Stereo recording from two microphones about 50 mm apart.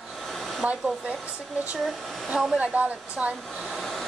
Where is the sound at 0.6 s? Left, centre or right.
Right.